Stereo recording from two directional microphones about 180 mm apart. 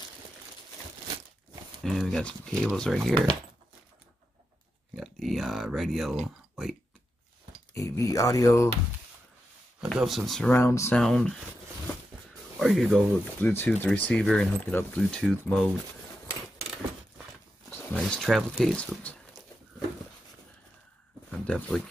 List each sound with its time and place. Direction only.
1.8 s speech: centre (ahead or behind)
4.9 s speech: centre (ahead or behind)
7.7 s speech: 15° left (ahead or behind)
9.8 s speech: 5° right (ahead or behind); by 11.0 s 15° left (ahead or behind)
11.0 s speech: 5° left (ahead or behind)
12.5 s speech: centre (ahead or behind)
13.5 s speech: 10° left (ahead or behind)
17.6 s speech: 5° left (ahead or behind)
21.3 s speech: 5° left (ahead or behind)